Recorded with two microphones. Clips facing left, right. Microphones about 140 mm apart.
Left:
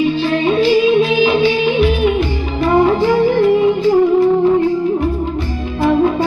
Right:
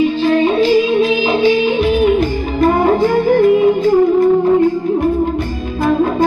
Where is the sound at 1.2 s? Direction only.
40° right (ahead or behind).